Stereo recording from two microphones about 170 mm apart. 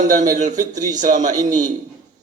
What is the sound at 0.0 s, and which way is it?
A man's voice, 50° right (ahead or behind).